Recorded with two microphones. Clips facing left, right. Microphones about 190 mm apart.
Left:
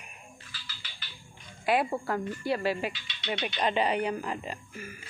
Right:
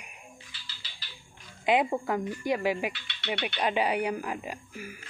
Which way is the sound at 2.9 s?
65° right (ahead or behind).